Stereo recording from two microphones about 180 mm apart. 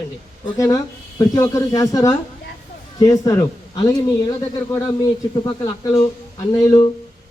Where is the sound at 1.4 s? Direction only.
20° left (ahead or behind).